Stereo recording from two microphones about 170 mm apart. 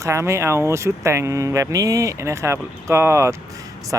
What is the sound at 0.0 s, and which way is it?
Speech, 15° right (ahead or behind).